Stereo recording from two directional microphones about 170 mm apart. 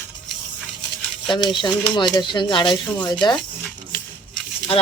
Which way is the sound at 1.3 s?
25° left (ahead or behind).